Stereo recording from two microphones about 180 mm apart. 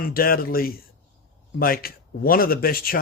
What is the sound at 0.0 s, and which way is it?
Speech, 55° left (ahead or behind).